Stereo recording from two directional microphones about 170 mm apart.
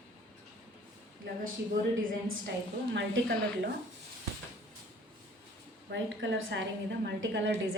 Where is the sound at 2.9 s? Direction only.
85° right.